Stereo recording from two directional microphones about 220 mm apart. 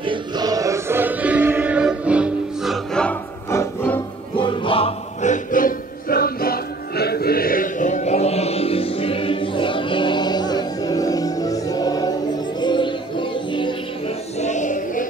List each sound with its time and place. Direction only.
0.0 s music: 20° right (ahead or behind); by 4.0 s 10° left (ahead or behind)
4.4 s music: 25° left (ahead or behind)